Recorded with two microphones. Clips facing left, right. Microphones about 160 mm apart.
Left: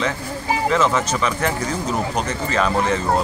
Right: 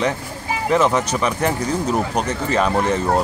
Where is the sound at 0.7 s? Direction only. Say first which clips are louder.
Right 5 dB; 15° right (ahead or behind).